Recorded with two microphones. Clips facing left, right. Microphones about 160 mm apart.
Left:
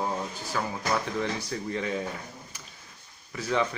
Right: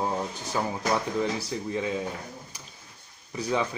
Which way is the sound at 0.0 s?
20° right (ahead or behind).